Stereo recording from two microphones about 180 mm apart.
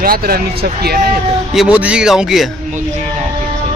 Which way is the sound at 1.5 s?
5° right (ahead or behind).